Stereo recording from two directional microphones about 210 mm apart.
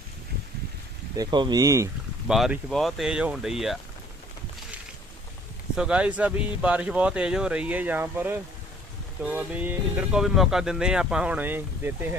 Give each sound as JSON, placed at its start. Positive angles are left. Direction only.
{"t": 1.1, "sound": "speech", "side_deg": -20}
{"t": 2.2, "sound": "speech", "side_deg": 0}
{"t": 5.7, "sound": "speech", "side_deg": -5}